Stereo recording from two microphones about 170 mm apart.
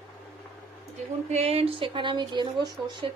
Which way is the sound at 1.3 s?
40° right (ahead or behind).